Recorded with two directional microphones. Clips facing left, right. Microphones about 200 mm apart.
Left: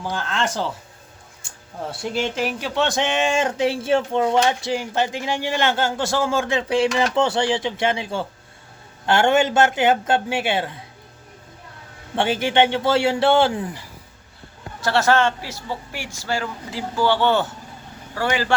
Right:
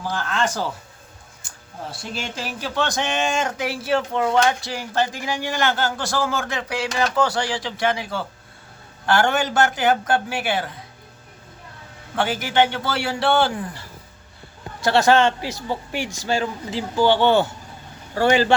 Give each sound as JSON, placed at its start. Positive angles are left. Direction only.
{"t": 0.0, "sound": "speech", "side_deg": 25}
{"t": 1.9, "sound": "speech", "side_deg": 25}
{"t": 12.1, "sound": "speech", "side_deg": 25}
{"t": 14.8, "sound": "speech", "side_deg": -15}
{"t": 18.1, "sound": "speech", "side_deg": -25}